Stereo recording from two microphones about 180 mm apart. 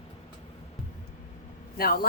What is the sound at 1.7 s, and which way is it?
Speech, 55° left (ahead or behind).